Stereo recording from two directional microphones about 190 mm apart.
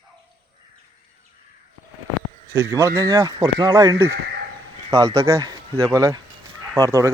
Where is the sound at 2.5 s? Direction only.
15° right (ahead or behind).